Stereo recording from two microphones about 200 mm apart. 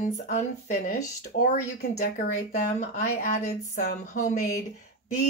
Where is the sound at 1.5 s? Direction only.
50° left (ahead or behind).